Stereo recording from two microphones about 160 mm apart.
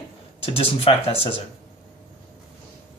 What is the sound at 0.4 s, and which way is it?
Speech, 40° left (ahead or behind).